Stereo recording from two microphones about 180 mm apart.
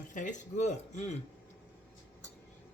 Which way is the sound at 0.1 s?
45° left (ahead or behind).